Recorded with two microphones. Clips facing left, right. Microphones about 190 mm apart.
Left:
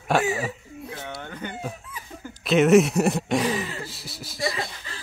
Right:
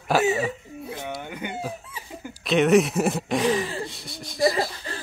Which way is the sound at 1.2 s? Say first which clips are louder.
Right 1 dB; 10° right (ahead or behind).